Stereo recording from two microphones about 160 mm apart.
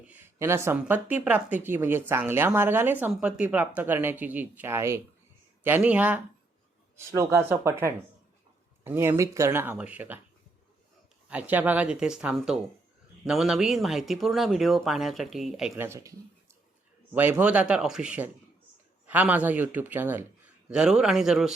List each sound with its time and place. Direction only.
0.1 s speech: 15° right (ahead or behind)
11.3 s speech: 10° right (ahead or behind)
15.7 s speech: 15° right (ahead or behind)
17.2 s speech: 10° right (ahead or behind)